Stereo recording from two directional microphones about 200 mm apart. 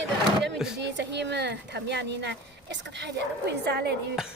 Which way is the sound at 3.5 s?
55° right (ahead or behind).